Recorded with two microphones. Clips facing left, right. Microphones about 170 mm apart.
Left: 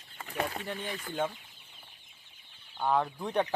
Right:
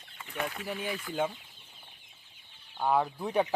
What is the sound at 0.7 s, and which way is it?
Speech, 10° right (ahead or behind).